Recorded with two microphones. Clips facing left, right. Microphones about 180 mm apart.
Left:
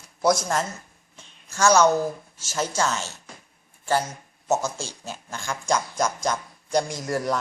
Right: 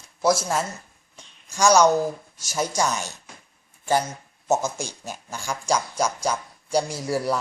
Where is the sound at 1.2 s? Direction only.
10° right (ahead or behind).